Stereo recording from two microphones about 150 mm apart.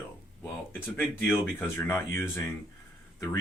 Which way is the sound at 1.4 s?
15° left (ahead or behind).